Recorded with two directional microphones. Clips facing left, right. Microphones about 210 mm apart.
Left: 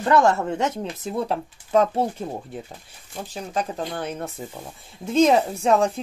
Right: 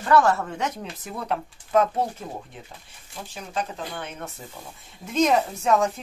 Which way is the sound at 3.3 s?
35° left (ahead or behind).